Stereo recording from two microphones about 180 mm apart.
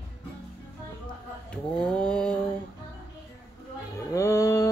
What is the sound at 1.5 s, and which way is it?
Mantra, 5° left (ahead or behind).